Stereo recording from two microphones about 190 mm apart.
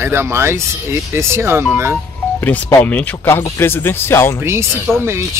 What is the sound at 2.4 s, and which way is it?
Speech, 10° left (ahead or behind).